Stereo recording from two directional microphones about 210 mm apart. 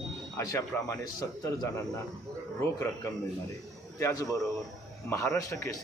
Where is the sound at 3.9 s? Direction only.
15° left (ahead or behind).